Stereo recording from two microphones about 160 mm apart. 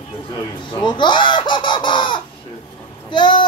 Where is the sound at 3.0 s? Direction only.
30° left (ahead or behind).